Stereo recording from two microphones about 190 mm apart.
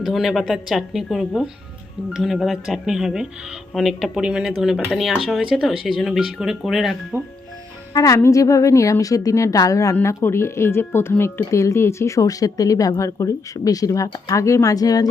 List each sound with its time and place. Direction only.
0.0 s speech: centre (ahead or behind)
7.9 s a woman's voice: 15° left (ahead or behind)